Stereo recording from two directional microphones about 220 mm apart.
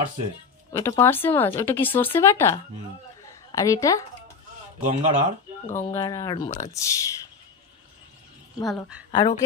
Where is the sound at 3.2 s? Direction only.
15° left (ahead or behind).